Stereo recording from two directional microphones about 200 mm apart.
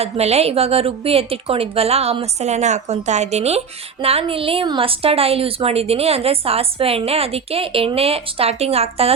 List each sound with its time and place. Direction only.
0.0 s a woman's voice: 30° right (ahead or behind)